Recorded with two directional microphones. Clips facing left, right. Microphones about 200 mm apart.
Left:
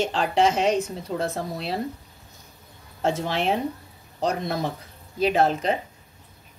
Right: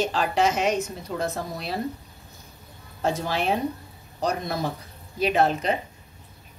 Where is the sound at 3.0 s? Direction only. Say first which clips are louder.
Left 1 dB; 25° left (ahead or behind).